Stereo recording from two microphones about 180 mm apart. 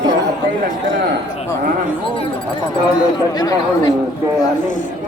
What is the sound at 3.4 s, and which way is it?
Speech, 20° left (ahead or behind).